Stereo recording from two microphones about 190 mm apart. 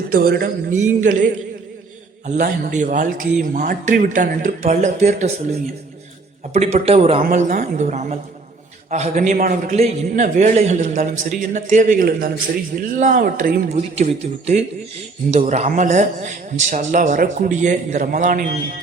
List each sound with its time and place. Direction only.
0.1 s a man's voice: 50° right (ahead or behind); by 7.2 s 30° right (ahead or behind)
7.2 s a man's voice: 45° right (ahead or behind)
13.7 s a man's voice: 35° right (ahead or behind)